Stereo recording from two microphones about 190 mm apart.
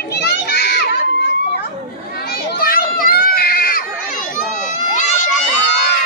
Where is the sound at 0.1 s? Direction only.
60° left (ahead or behind).